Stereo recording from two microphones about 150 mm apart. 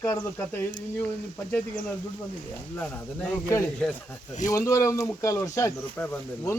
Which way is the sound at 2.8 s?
10° left (ahead or behind).